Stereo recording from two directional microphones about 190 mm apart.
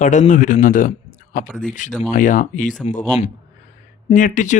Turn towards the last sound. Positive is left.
turn(degrees=40)  # may be behind; listen again after turning